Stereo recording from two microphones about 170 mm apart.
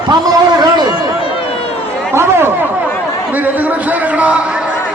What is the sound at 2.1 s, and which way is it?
Chatter, 15° right (ahead or behind).